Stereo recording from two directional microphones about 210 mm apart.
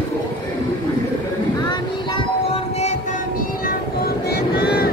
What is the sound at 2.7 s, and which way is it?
Child singing, 30° left (ahead or behind).